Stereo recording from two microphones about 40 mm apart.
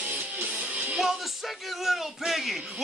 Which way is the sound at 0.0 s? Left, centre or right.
Right.